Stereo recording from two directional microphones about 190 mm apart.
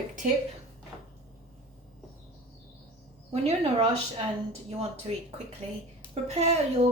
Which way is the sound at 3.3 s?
35° right (ahead or behind).